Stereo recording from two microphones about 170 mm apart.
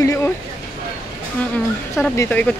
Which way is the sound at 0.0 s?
20° left (ahead or behind).